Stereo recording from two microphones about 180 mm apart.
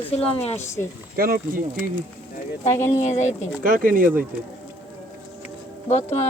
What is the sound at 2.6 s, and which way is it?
Speech, 40° left (ahead or behind).